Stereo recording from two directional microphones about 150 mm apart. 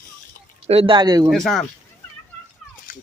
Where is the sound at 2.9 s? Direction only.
65° left (ahead or behind).